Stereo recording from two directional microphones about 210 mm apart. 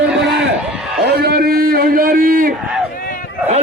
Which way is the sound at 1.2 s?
45° right (ahead or behind).